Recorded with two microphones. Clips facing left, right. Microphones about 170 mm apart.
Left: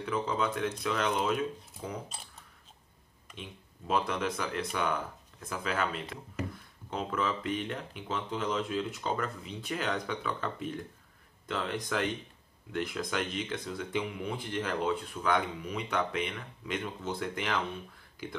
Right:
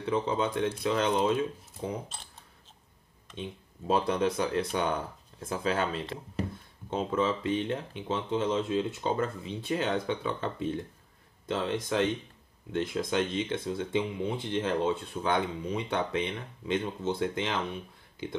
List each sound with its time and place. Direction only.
0.0 s speech: 30° right (ahead or behind)
3.3 s speech: 30° right (ahead or behind)